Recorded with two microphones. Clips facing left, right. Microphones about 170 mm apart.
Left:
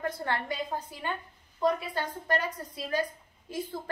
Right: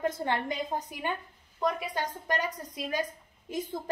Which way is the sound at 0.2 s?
20° right (ahead or behind).